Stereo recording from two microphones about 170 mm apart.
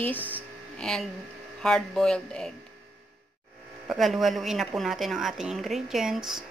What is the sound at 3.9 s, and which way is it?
A woman's voice, centre (ahead or behind).